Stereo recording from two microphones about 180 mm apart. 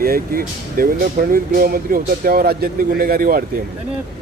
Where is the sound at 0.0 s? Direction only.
55° right (ahead or behind).